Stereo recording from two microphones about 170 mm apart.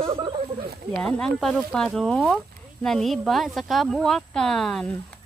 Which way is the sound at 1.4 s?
5° left (ahead or behind).